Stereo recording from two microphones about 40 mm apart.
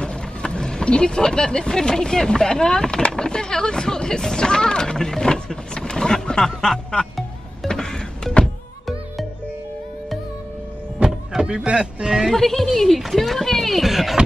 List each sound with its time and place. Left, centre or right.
0.0 s speech: left
7.6 s music: centre
11.4 s speech: right
12.3 s speech: centre